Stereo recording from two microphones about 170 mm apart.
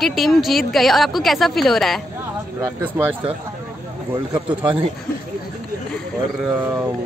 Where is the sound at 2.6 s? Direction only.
10° right (ahead or behind).